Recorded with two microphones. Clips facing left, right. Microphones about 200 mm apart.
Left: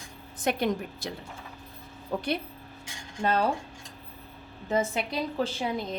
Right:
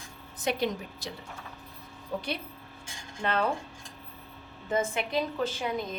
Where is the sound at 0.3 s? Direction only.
55° left (ahead or behind).